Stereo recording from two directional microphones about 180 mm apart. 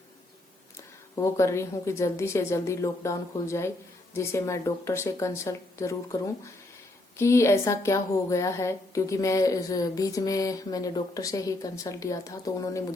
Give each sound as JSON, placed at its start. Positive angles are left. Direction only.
{"t": 1.1, "sound": "a woman's voice", "side_deg": 15}